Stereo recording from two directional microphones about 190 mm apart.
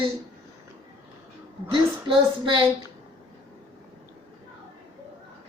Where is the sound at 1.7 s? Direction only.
25° right (ahead or behind).